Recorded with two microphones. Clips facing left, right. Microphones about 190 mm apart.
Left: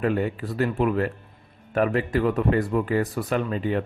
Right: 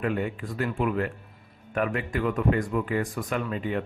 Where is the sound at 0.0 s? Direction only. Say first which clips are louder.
Left 4 dB; 35° left (ahead or behind).